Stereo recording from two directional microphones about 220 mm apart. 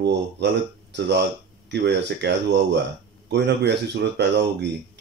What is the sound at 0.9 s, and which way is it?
Speech, 50° right (ahead or behind).